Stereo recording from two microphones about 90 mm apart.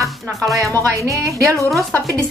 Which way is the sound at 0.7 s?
20° left (ahead or behind).